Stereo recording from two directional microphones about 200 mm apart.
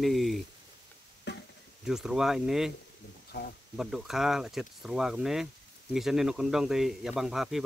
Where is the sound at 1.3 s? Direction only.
60° left (ahead or behind).